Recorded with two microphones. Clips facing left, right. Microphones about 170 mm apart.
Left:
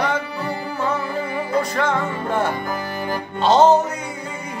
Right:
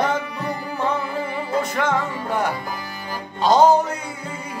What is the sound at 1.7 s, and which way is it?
Music, 15° right (ahead or behind).